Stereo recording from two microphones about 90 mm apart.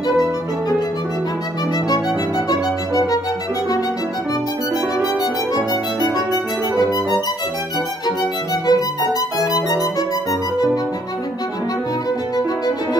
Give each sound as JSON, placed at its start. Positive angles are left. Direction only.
{"t": 2.5, "sound": "music", "side_deg": 40}
{"t": 6.1, "sound": "music", "side_deg": 45}
{"t": 8.6, "sound": "music", "side_deg": 45}